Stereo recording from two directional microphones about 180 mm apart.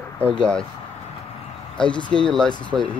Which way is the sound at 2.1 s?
5° left (ahead or behind).